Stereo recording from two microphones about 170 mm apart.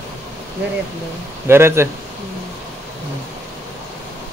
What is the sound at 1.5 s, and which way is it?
Speech, 15° right (ahead or behind).